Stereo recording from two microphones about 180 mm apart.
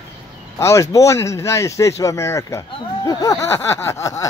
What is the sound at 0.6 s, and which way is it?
Speech, 15° left (ahead or behind).